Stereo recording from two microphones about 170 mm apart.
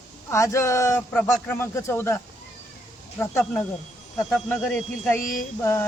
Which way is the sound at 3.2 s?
15° left (ahead or behind).